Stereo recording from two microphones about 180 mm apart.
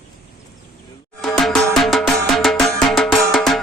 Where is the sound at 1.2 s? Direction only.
Centre (ahead or behind).